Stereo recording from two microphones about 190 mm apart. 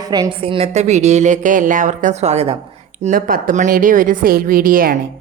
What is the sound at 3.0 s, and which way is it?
A woman's voice, 45° right (ahead or behind).